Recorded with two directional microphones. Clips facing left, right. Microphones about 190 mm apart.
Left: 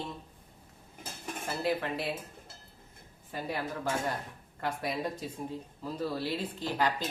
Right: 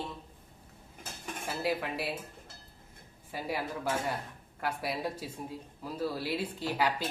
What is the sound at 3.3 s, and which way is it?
Speech, 10° right (ahead or behind).